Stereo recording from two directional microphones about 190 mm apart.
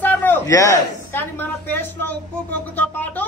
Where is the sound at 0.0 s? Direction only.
10° left (ahead or behind).